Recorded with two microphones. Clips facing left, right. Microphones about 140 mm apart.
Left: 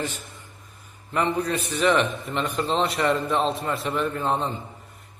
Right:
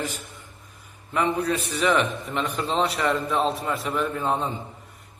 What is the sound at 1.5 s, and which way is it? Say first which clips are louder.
Speech: left 1 dB; 35° left (ahead or behind).